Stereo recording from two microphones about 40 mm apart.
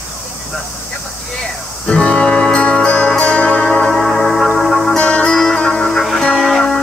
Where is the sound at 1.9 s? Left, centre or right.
Left.